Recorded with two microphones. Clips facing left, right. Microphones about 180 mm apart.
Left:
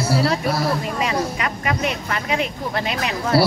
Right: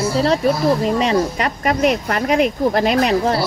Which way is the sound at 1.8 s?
45° right (ahead or behind).